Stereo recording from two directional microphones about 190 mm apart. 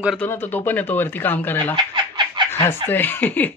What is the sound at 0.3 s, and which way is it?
Speech, 10° left (ahead or behind).